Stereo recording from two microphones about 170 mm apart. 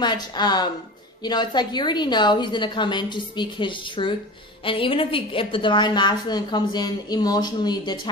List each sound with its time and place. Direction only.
0.0 s a woman's voice: 25° left (ahead or behind)